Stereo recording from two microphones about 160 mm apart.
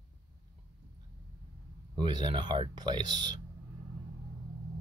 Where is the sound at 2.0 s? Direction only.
30° right (ahead or behind).